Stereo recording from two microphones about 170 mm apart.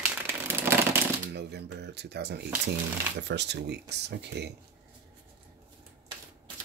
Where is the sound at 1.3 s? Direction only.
75° right (ahead or behind).